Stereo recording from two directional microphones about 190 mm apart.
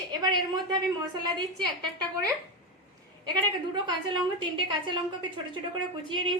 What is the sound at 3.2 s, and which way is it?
A woman's voice, 20° right (ahead or behind).